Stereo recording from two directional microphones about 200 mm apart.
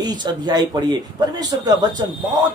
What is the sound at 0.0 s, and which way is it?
Speech, 20° right (ahead or behind).